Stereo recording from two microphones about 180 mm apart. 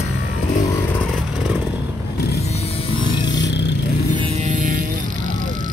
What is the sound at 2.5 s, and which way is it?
Mains hum, 30° left (ahead or behind).